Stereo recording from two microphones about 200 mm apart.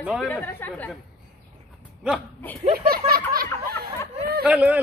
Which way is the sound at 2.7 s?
50° right (ahead or behind).